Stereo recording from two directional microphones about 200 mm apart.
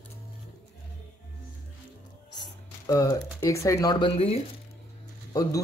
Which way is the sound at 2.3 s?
20° left (ahead or behind).